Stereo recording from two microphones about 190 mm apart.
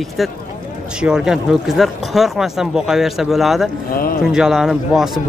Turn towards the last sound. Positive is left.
turn(degrees=0)  # may be behind; listen again after turning